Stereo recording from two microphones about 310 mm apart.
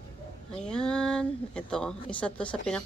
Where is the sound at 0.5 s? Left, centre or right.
Centre.